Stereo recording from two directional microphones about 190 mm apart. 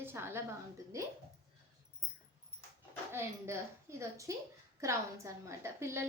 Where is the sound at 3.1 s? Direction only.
15° right (ahead or behind).